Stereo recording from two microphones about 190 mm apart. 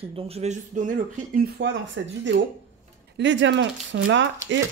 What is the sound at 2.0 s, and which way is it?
Speech, 80° right.